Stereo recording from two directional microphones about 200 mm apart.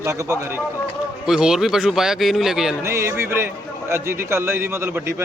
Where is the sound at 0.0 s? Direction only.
15° right (ahead or behind).